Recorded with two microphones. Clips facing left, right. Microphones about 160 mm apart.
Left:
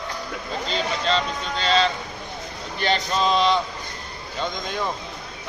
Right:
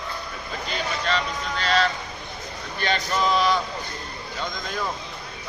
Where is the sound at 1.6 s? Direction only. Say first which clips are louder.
Left 2 dB; 25° left (ahead or behind).